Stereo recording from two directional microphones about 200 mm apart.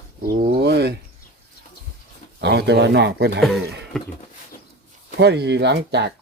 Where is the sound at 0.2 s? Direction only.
50° right (ahead or behind).